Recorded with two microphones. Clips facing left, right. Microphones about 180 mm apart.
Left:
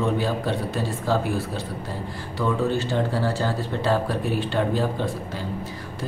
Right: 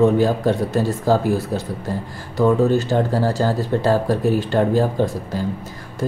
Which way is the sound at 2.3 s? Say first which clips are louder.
Right 8 dB; 40° right (ahead or behind).